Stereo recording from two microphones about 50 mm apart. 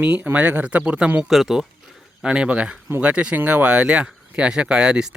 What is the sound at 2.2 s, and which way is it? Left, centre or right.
Speech, centre.